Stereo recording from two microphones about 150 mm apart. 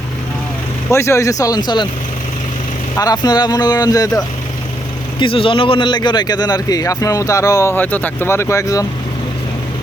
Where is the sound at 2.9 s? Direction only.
25° left (ahead or behind).